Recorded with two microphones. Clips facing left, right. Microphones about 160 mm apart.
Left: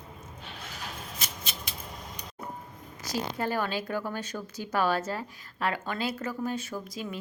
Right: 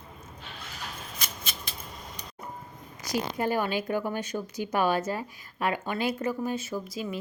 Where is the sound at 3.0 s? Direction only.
15° right (ahead or behind).